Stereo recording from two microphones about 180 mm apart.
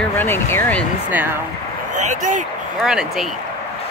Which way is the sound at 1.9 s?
45° right (ahead or behind).